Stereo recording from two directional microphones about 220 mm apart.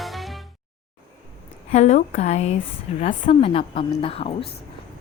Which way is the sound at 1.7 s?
30° left (ahead or behind).